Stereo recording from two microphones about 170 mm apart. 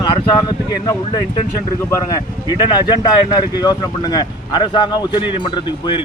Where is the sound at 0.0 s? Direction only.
25° left (ahead or behind).